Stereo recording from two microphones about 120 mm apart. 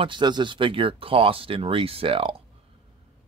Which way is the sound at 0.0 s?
40° right (ahead or behind).